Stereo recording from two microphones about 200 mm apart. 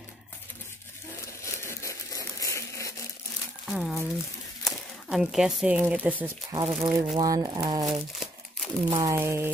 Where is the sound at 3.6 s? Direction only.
Centre (ahead or behind).